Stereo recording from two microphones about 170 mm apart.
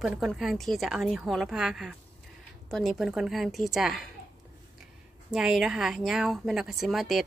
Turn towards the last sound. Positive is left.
turn(degrees=0)  # may be behind; listen again after turning